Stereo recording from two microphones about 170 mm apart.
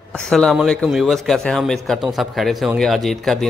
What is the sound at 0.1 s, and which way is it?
A man's voice, 5° left (ahead or behind).